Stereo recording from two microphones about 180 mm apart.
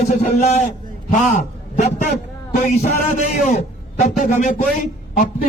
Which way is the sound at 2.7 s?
40° left (ahead or behind).